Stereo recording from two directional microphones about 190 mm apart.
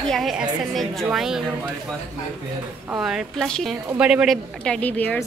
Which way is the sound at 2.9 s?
5° right (ahead or behind).